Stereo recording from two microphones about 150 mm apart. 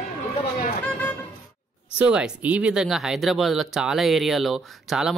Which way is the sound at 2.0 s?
5° right (ahead or behind).